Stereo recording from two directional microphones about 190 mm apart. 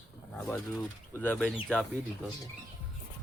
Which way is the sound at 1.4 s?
Centre (ahead or behind).